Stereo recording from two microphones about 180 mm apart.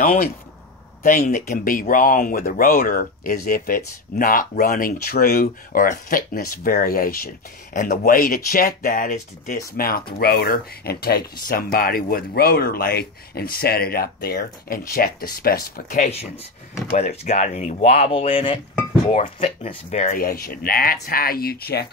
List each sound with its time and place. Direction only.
0.0 s speech: 50° left (ahead or behind)